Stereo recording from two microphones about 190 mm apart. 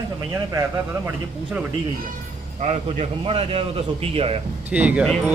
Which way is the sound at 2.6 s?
35° right (ahead or behind).